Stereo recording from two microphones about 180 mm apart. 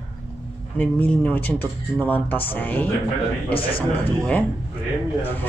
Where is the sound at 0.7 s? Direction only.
10° left (ahead or behind).